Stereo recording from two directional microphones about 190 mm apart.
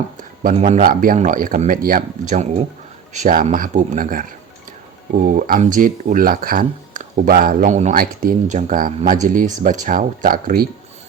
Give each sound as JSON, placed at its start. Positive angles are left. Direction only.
{"t": 0.5, "sound": "speech", "side_deg": -40}